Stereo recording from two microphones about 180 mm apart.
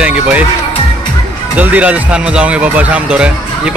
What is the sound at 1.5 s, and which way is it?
Speech, 10° right (ahead or behind).